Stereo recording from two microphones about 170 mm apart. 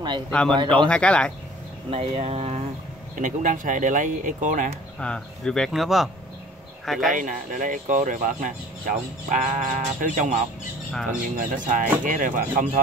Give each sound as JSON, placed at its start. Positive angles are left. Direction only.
{"t": 0.3, "sound": "speech", "side_deg": 5}
{"t": 1.9, "sound": "speech", "side_deg": -35}
{"t": 3.2, "sound": "speech", "side_deg": -50}
{"t": 5.0, "sound": "speech", "side_deg": 5}
{"t": 7.1, "sound": "speech", "side_deg": -50}